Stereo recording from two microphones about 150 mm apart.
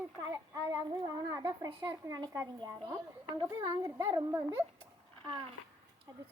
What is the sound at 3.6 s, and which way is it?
Speech, 25° right (ahead or behind).